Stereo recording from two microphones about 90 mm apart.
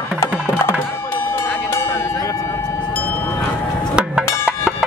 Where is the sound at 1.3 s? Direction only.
30° left (ahead or behind).